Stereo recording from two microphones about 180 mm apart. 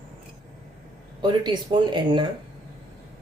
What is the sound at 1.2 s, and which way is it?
Speech, 25° right (ahead or behind).